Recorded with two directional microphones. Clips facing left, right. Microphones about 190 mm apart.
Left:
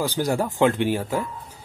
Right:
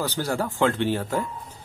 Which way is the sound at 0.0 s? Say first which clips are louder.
Left 3 dB; 15° left (ahead or behind).